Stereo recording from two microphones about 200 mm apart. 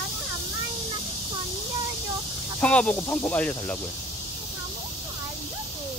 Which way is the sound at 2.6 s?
5° left (ahead or behind).